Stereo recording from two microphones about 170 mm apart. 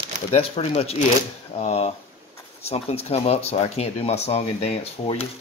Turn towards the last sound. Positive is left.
turn(degrees=35)  # may be behind; listen again after turning